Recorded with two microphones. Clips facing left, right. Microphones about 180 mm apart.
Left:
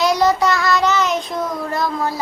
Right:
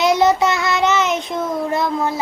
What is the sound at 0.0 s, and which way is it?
Child singing, 25° right (ahead or behind).